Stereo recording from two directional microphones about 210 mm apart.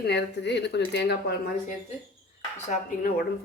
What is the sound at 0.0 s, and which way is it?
A woman's voice, 55° left (ahead or behind).